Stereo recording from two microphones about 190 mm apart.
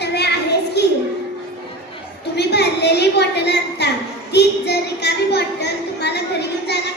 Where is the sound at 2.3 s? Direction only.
60° left (ahead or behind).